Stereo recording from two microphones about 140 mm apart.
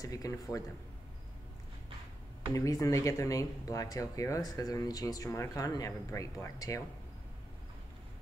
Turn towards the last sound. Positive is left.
turn(degrees=25)  # may be behind; listen again after turning